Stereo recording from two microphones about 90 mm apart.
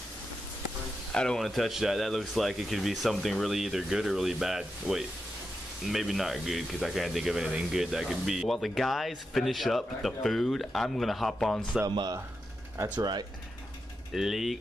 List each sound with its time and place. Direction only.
1.1 s speech: 5° left (ahead or behind)
11.9 s speech: 55° right (ahead or behind)
14.1 s speech: 5° right (ahead or behind)